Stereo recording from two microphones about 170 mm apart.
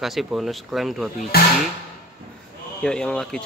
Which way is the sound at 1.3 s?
65° left (ahead or behind).